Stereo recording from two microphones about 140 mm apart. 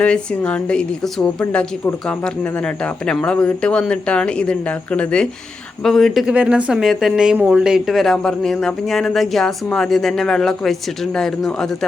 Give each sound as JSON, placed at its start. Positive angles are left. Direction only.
{"t": 0.0, "sound": "speech", "side_deg": 10}